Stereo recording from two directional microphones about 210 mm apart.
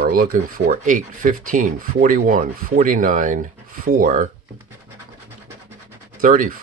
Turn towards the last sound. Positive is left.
turn(degrees=-40)  # may be behind; listen again after turning